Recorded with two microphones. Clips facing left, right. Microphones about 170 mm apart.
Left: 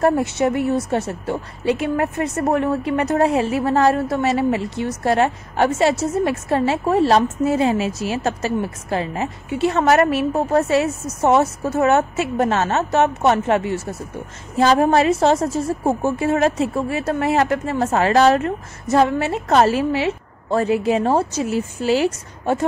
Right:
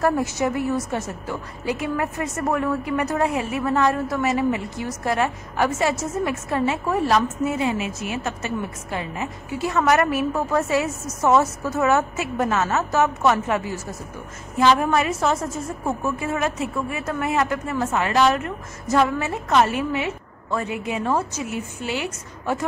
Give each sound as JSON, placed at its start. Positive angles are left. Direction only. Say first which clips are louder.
{"t": 0.0, "sound": "a woman's voice", "louder": "left 4 dB", "side_deg": 30}
{"t": 14.6, "sound": "a woman's voice", "louder": "left 4 dB", "side_deg": 35}